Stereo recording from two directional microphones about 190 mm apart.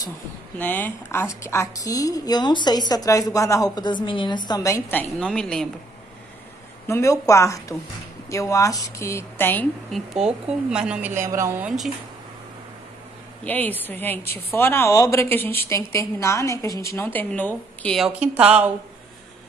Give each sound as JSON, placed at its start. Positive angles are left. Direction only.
{"t": 0.6, "sound": "a woman's voice", "side_deg": 10}
{"t": 5.2, "sound": "a woman's voice", "side_deg": 5}
{"t": 6.9, "sound": "a woman's voice", "side_deg": 15}
{"t": 13.4, "sound": "a woman's voice", "side_deg": 10}